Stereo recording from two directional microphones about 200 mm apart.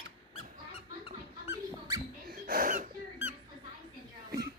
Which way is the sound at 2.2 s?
45° right (ahead or behind).